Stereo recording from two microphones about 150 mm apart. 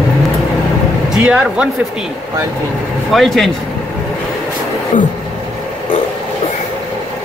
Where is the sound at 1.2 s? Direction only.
5° right (ahead or behind).